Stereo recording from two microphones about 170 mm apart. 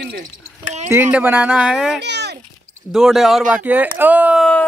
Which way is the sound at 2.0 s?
85° right.